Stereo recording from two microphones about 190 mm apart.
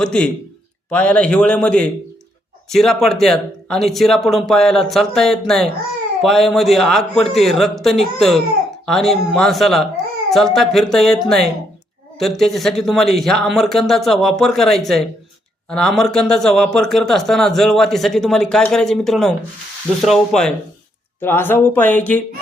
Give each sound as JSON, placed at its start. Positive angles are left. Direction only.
{"t": 0.0, "sound": "speech", "side_deg": 5}